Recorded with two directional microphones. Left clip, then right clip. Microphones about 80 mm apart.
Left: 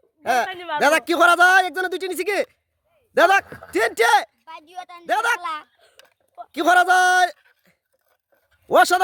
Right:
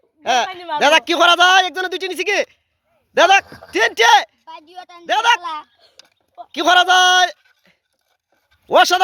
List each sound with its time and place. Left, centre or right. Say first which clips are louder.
0.2 s a man's voice: right 3 dB; left
3.4 s speech: even; centre
3.7 s a man's voice: right 5 dB; left
4.4 s a woman's voice: right 1 dB; left
5.0 s speech: right 6 dB; left
6.5 s a man's voice: right 3 dB; left
8.7 s speech: right 3 dB; left